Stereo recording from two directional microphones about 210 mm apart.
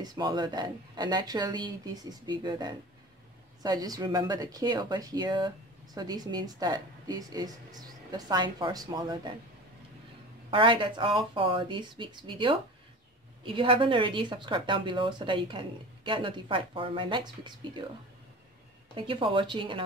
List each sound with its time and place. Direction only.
0.0 s speech: 20° right (ahead or behind)
10.5 s speech: 25° right (ahead or behind)
18.9 s speech: 25° right (ahead or behind)